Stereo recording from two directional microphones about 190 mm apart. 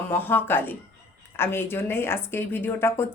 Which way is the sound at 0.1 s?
10° left (ahead or behind).